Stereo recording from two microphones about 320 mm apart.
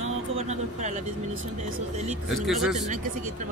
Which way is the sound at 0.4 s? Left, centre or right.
Right.